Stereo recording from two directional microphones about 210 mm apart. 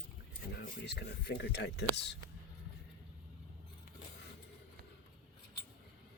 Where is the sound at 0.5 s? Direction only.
55° left (ahead or behind).